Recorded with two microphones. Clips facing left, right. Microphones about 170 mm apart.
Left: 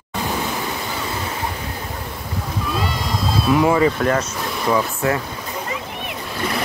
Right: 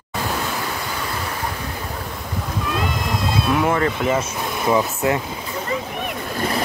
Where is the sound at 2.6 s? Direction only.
Centre (ahead or behind).